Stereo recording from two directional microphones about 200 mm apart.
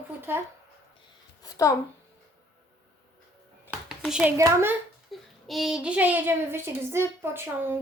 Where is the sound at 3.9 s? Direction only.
5° right (ahead or behind).